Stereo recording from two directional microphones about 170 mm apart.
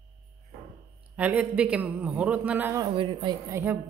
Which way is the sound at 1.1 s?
10° right (ahead or behind).